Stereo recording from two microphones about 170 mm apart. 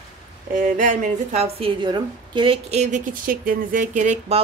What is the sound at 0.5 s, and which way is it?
A woman's voice, 50° right (ahead or behind).